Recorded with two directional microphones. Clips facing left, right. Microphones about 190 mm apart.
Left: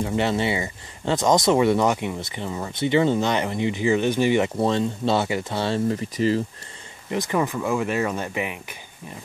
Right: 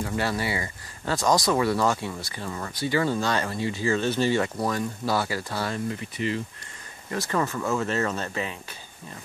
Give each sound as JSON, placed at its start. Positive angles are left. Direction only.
{"t": 0.0, "sound": "speech", "side_deg": 20}
{"t": 7.1, "sound": "speech", "side_deg": 15}